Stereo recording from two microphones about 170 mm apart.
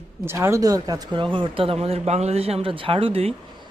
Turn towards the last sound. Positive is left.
turn(degrees=-35)  # may be behind; listen again after turning